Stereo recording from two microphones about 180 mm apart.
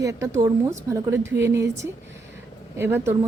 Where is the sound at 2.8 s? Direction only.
15° right (ahead or behind).